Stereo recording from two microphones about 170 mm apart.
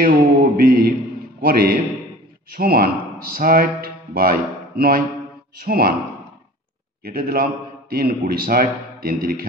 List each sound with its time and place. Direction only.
0.0 s music: 55° right (ahead or behind)
1.4 s a man's voice: 60° right (ahead or behind)
7.0 s a man's voice: 60° right (ahead or behind)